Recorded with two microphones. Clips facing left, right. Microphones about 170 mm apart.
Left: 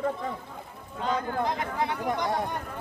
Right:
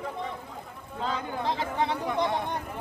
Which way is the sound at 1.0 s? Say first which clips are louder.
Left 3 dB; 30° right (ahead or behind).